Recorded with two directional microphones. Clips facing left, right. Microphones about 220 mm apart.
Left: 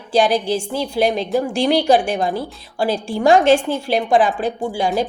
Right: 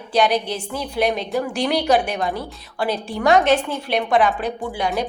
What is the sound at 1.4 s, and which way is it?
A woman's voice, 30° left (ahead or behind).